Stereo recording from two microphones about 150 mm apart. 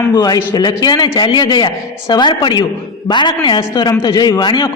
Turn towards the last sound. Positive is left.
turn(degrees=30)  # may be behind; listen again after turning